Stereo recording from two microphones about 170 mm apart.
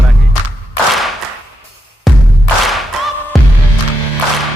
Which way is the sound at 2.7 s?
Centre (ahead or behind).